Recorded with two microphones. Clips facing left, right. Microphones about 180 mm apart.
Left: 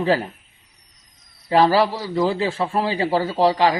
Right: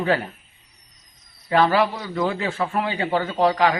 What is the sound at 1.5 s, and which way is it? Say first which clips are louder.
A man's voice: left 2 dB; 35° left (ahead or behind).